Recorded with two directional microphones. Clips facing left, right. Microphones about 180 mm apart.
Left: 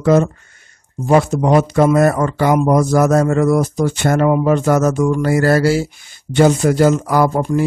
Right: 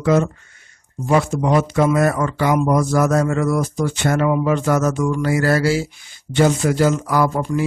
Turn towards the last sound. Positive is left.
turn(degrees=45)  # may be behind; listen again after turning